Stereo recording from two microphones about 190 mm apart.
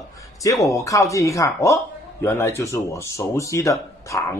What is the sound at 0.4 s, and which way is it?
Speech, 15° left (ahead or behind).